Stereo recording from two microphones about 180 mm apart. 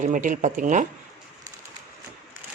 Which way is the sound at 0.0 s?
45° right (ahead or behind).